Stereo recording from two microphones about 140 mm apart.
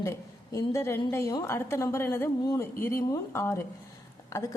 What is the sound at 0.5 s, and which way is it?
A woman's voice, 20° left (ahead or behind).